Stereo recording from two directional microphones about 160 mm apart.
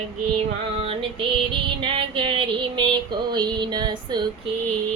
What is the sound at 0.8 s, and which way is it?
Female singing, 35° right (ahead or behind).